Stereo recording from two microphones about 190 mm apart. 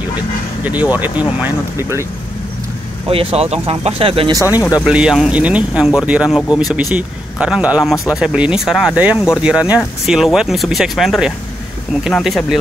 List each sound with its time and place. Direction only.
0.7 s speech: 10° right (ahead or behind)
3.1 s speech: 30° right (ahead or behind)
4.4 s speech: 20° left (ahead or behind)
4.8 s speech: 5° right (ahead or behind)